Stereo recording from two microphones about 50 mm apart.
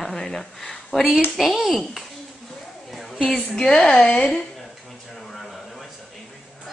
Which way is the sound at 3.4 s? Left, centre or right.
Centre.